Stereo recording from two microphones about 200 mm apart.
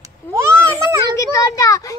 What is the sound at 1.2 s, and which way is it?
Speech, 15° left (ahead or behind).